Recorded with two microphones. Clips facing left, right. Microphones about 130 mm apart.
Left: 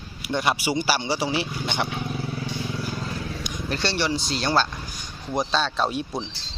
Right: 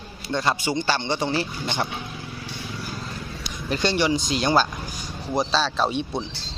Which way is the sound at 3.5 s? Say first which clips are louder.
Left 3 dB; centre (ahead or behind).